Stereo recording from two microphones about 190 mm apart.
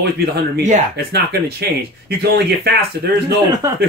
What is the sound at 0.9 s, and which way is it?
Speech, 55° right (ahead or behind).